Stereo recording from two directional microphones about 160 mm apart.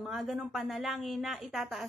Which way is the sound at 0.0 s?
Centre (ahead or behind).